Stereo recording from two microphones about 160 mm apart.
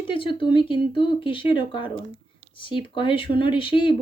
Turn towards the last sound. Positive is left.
turn(degrees=30)  # may be behind; listen again after turning